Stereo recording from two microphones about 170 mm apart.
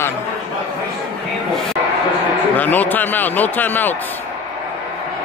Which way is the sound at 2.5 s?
10° left (ahead or behind).